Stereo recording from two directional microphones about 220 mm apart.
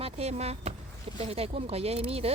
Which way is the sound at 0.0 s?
30° right (ahead or behind).